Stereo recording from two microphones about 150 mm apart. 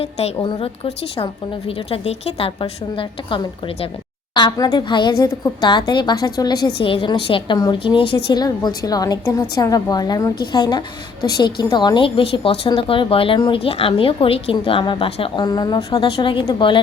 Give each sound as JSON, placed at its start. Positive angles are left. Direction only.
{"t": 0.0, "sound": "a woman's voice", "side_deg": 40}